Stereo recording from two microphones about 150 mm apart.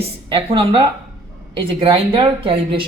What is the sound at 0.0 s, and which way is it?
Speech, 35° right (ahead or behind).